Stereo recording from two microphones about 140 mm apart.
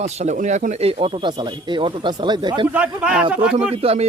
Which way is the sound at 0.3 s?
65° right (ahead or behind).